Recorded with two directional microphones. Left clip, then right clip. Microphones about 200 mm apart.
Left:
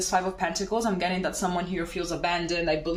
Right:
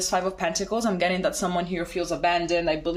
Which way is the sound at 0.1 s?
45° right (ahead or behind).